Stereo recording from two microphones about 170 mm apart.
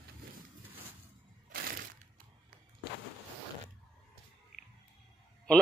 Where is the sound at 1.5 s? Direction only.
60° right (ahead or behind).